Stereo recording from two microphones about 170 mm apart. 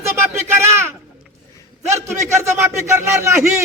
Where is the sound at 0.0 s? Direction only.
15° right (ahead or behind).